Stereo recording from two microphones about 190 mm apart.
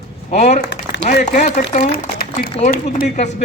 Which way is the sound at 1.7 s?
40° left (ahead or behind).